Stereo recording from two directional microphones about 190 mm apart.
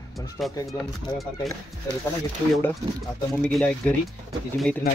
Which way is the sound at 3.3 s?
Centre (ahead or behind).